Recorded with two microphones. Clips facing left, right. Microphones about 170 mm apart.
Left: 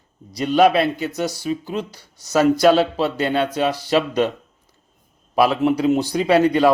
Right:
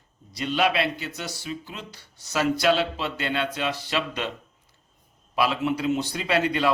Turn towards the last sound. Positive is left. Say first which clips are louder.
# left 8 dB
turn(degrees=40)  # may be behind; listen again after turning